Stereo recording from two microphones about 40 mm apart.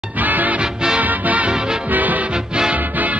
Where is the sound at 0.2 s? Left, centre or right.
Right.